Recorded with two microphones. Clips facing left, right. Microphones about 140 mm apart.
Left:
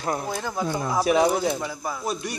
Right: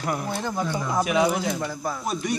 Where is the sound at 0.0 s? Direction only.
30° left (ahead or behind).